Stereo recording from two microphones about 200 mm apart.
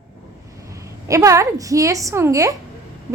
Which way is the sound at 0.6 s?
15° right (ahead or behind).